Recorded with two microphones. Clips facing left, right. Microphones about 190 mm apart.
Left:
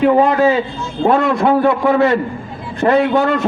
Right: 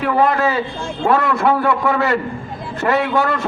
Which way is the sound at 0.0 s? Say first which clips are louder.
Left 5 dB; 20° left (ahead or behind).